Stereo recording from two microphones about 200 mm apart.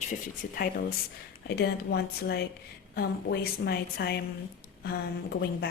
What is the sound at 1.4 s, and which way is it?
A woman's voice, 55° left (ahead or behind).